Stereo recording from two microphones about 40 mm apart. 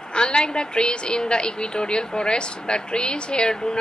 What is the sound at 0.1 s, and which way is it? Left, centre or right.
A woman's voice, left.